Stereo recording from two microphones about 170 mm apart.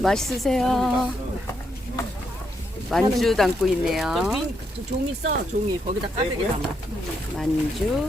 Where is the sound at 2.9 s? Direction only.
Centre (ahead or behind).